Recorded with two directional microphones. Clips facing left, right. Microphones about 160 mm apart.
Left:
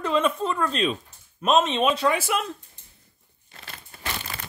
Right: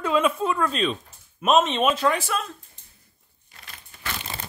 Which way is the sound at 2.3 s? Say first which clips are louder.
Left 2 dB; 20° left (ahead or behind).